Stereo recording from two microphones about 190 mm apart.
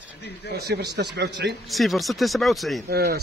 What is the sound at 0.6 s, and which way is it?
Speech, 55° right (ahead or behind).